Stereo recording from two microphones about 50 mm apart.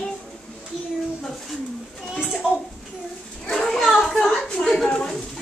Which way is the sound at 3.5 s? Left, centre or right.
Centre.